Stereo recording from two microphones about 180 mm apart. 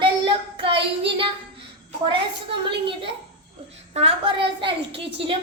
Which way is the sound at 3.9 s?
35° right (ahead or behind).